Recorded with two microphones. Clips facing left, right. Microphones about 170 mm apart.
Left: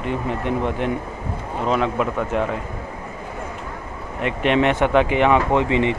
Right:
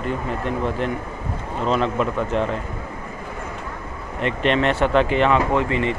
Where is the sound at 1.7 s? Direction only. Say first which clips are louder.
Even; 10° left (ahead or behind).